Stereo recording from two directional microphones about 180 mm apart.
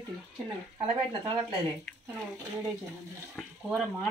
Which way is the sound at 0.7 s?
25° right (ahead or behind).